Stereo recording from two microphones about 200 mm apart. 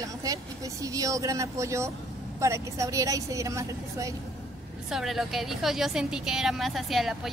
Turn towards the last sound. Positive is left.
turn(degrees=0)  # may be behind; listen again after turning